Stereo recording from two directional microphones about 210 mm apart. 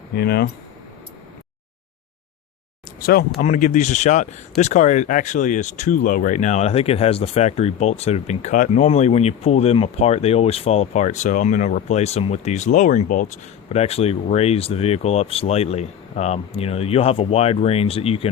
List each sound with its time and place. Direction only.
0.2 s speech: 50° left (ahead or behind)
3.0 s speech: 45° left (ahead or behind); by 18.3 s 25° left (ahead or behind)